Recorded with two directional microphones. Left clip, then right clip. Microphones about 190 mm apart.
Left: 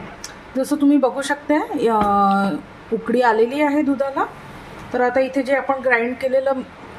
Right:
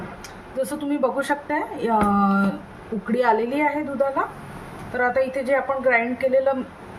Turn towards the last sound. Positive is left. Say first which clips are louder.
# left 1 dB
turn(degrees=45)  # may be behind; listen again after turning